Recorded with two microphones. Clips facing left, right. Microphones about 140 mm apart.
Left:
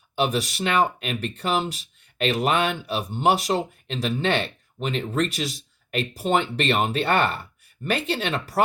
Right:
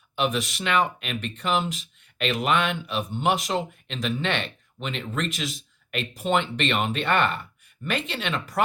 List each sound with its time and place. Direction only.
0.2 s speech: 35° left (ahead or behind)